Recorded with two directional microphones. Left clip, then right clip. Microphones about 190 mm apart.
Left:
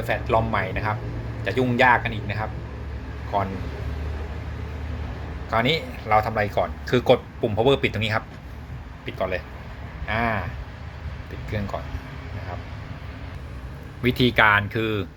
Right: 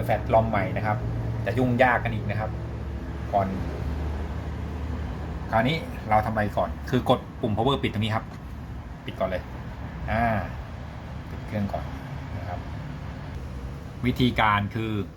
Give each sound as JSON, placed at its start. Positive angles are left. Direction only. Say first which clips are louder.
{"t": 0.1, "sound": "speech", "louder": "even", "side_deg": 25}
{"t": 5.5, "sound": "speech", "louder": "left 2 dB", "side_deg": 20}
{"t": 11.5, "sound": "speech", "louder": "left 1 dB", "side_deg": 20}
{"t": 14.0, "sound": "speech", "louder": "left 5 dB", "side_deg": 20}